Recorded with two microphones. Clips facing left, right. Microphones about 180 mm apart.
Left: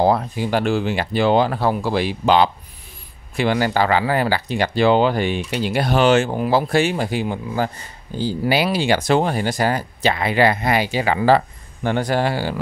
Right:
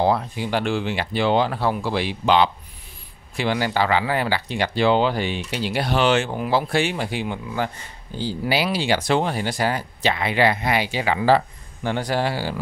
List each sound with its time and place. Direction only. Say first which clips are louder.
0.0 s speech: left 3 dB; 45° left (ahead or behind)